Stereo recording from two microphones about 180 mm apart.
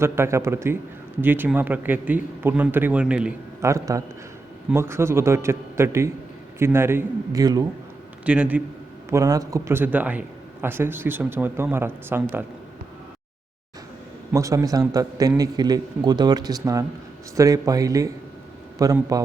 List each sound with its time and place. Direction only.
0.0 s a man's voice: 15° right (ahead or behind)
3.6 s a man's voice: 15° right (ahead or behind)
8.2 s a man's voice: 5° right (ahead or behind)
9.0 s a man's voice: 20° right (ahead or behind)
14.3 s speech: 20° right (ahead or behind)